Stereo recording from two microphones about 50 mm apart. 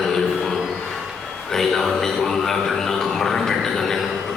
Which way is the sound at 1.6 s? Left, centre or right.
Centre.